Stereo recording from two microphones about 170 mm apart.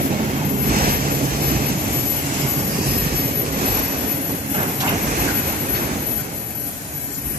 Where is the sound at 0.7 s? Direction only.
60° right (ahead or behind).